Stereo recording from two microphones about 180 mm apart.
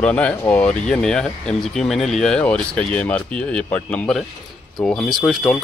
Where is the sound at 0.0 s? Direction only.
5° left (ahead or behind).